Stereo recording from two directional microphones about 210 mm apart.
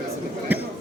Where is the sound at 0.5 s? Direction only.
10° right (ahead or behind).